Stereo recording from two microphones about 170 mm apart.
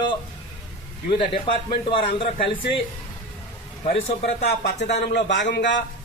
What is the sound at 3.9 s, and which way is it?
Speech, 70° left (ahead or behind).